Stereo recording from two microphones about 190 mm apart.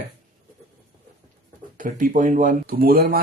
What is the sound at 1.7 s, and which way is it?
Speech, 45° right (ahead or behind).